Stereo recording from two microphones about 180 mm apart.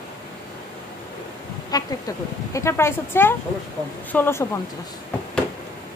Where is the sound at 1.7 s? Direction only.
20° left (ahead or behind).